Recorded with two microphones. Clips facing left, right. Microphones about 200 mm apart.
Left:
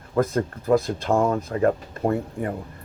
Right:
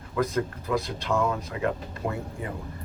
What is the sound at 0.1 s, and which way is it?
Speech, 50° left (ahead or behind).